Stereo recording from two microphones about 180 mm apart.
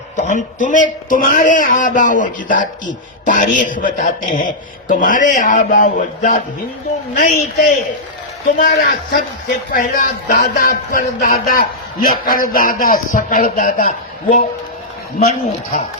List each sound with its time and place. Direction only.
0.2 s speech: 45° left (ahead or behind)